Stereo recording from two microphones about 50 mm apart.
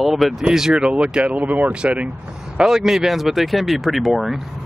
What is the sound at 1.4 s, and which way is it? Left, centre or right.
Speech, right.